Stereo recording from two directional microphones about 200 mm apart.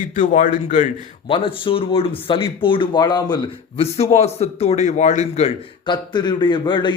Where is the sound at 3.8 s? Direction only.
30° left (ahead or behind).